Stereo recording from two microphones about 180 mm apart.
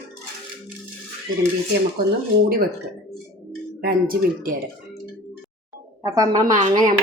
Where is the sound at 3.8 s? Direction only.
55° right (ahead or behind).